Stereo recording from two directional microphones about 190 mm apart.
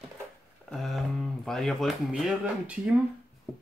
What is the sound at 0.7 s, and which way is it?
Speech, centre (ahead or behind).